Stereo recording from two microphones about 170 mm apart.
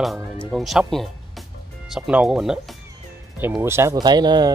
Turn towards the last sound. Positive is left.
turn(degrees=-25)  # may be behind; listen again after turning